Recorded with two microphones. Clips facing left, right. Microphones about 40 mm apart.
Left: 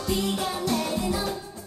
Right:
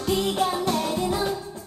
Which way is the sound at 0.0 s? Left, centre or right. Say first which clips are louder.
Right 4 dB; right.